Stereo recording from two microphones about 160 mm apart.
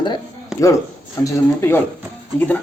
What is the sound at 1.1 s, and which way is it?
Speech, 20° left (ahead or behind).